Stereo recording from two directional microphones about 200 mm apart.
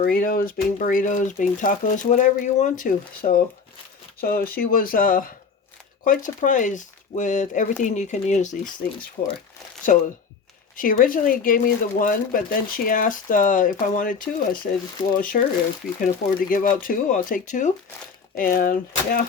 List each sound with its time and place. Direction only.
0.0 s speech: 45° left (ahead or behind)
9.9 s speech: 40° left (ahead or behind)